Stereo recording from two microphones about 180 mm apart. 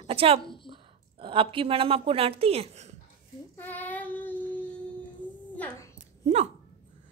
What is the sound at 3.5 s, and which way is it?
Child singing, 10° left (ahead or behind).